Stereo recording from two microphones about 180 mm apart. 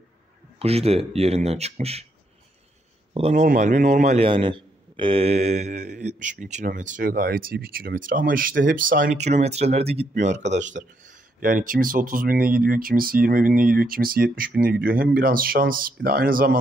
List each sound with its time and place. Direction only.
0.6 s speech: 35° right (ahead or behind)
3.2 s speech: 40° right (ahead or behind)
4.3 s speech: 30° right (ahead or behind); by 16.5 s 55° right (ahead or behind)